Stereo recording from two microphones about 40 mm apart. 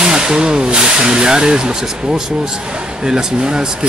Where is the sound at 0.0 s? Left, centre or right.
Centre.